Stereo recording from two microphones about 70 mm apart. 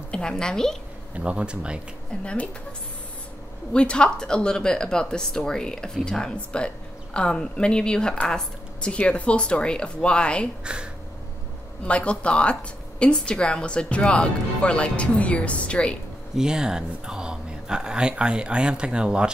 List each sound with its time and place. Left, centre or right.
0.1 s a woman's voice: centre
1.1 s speech: centre
2.2 s speech: left
3.7 s a woman's voice: centre
10.6 s speech: centre
11.8 s a woman's voice: centre
16.3 s speech: centre